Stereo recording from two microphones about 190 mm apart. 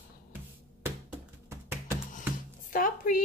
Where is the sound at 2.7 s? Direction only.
45° left (ahead or behind).